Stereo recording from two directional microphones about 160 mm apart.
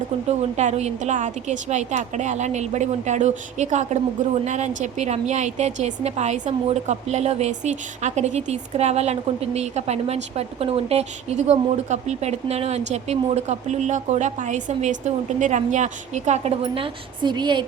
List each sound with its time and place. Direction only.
0.3 s a woman's voice: 45° right (ahead or behind); by 17.7 s 30° right (ahead or behind)